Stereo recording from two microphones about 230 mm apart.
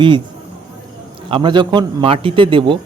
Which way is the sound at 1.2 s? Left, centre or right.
Right.